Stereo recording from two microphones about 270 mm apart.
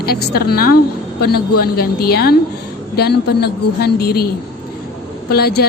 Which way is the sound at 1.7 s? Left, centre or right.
Left.